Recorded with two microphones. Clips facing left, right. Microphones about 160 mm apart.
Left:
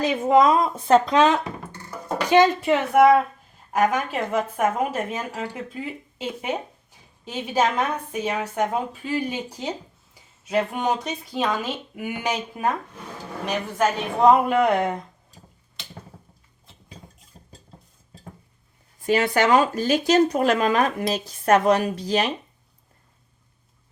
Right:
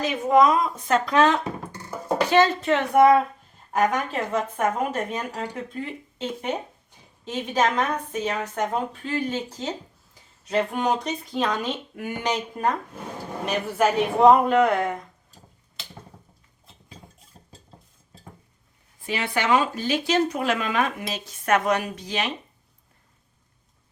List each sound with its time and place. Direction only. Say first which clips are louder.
0.0 s speech: left 1 dB; 25° left (ahead or behind)
1.1 s a woman's voice: left 1 dB; 15° left (ahead or behind)
10.5 s a woman's voice: even; centre (ahead or behind)
13.4 s speech: right 1 dB; 5° right (ahead or behind)
14.4 s a woman's voice: even; 10° left (ahead or behind)
17.3 s stir: left 2 dB; centre (ahead or behind)
19.0 s speech: left 5 dB; 45° left (ahead or behind)